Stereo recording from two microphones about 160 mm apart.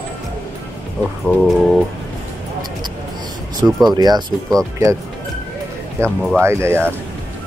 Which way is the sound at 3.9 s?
25° right (ahead or behind).